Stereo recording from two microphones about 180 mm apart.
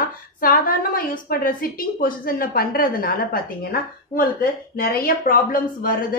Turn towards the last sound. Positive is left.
turn(degrees=50)  # may be behind; listen again after turning